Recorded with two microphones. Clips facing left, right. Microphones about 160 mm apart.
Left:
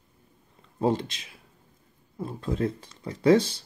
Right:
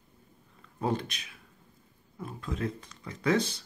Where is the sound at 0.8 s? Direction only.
25° left (ahead or behind).